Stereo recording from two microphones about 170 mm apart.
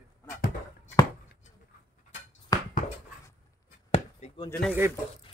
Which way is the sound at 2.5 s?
20° left (ahead or behind).